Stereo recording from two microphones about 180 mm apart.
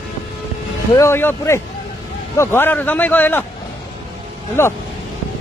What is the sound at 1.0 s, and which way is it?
A man's voice, 15° left (ahead or behind).